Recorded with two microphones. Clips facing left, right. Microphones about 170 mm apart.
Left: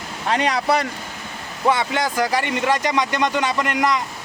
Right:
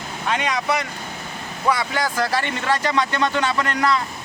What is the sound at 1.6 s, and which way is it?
Speech, 25° left (ahead or behind).